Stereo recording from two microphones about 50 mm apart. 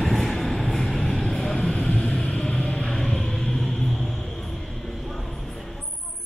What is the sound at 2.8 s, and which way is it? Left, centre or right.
Music, centre.